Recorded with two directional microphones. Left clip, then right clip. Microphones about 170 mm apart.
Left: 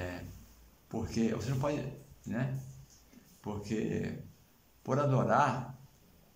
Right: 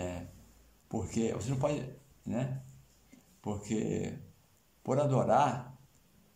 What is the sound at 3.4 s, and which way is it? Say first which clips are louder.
A man's voice: right 1 dB; 20° right (ahead or behind).